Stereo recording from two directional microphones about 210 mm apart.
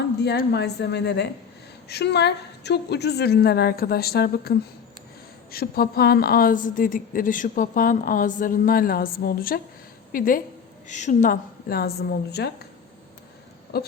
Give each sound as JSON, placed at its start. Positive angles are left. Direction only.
{"t": 0.3, "sound": "a woman's voice", "side_deg": 50}
{"t": 13.7, "sound": "a woman's voice", "side_deg": 50}